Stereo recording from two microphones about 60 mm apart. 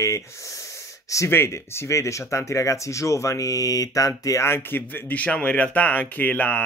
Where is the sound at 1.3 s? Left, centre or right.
Left.